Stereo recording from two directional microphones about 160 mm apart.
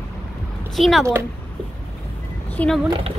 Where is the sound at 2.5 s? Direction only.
10° left (ahead or behind).